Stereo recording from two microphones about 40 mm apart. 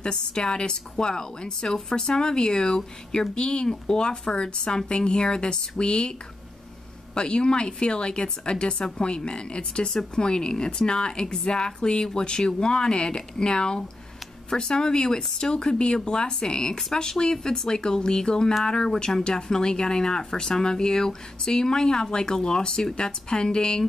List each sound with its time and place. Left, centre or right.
0.0 s a woman's voice: left
7.2 s a woman's voice: left